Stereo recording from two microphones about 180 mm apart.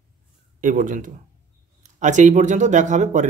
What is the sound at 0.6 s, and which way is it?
Speech, 45° right (ahead or behind).